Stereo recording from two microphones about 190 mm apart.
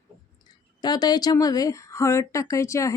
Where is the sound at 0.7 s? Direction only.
20° left (ahead or behind).